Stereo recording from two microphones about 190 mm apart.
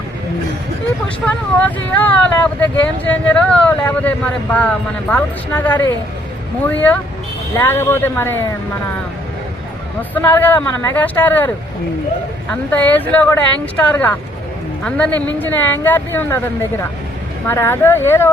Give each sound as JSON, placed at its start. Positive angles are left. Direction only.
{"t": 1.0, "sound": "speech", "side_deg": 5}
{"t": 10.2, "sound": "a woman's voice", "side_deg": 10}
{"t": 17.4, "sound": "speech", "side_deg": 10}